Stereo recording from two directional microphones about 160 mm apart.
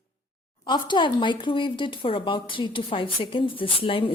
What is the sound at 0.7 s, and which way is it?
A woman's voice, 30° left (ahead or behind).